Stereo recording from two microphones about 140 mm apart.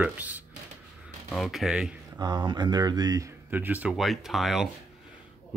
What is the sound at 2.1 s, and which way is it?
Speech, 30° right (ahead or behind).